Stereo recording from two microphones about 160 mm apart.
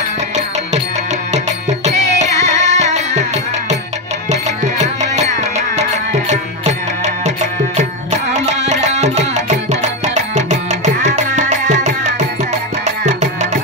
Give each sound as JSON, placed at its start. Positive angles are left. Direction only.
{"t": 1.3, "sound": "music", "side_deg": -45}
{"t": 4.3, "sound": "music", "side_deg": -45}